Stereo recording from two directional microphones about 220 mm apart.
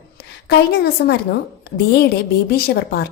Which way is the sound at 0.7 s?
45° left (ahead or behind).